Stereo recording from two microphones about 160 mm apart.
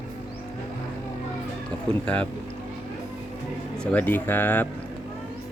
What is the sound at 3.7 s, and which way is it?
Speech, 5° left (ahead or behind).